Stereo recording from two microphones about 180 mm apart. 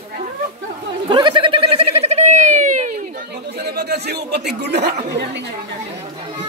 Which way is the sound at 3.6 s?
65° right (ahead or behind).